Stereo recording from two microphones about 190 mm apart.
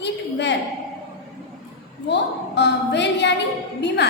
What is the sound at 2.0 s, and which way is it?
A woman's voice, 65° left (ahead or behind).